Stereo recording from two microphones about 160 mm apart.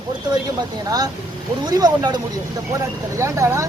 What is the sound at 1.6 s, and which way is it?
Speech, 25° right (ahead or behind).